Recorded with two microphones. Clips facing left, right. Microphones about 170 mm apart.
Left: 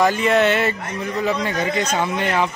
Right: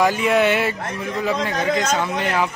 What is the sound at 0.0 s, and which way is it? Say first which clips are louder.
Speech: left 1 dB; 10° right (ahead or behind).